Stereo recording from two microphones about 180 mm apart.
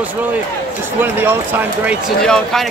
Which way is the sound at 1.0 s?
10° right (ahead or behind).